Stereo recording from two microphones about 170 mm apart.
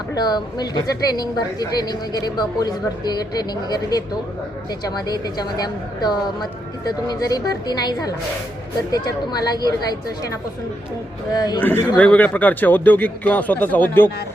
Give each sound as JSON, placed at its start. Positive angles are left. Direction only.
{"t": 0.1, "sound": "a woman's voice", "side_deg": 25}
{"t": 11.3, "sound": "a woman's voice", "side_deg": 25}
{"t": 11.9, "sound": "speech", "side_deg": 10}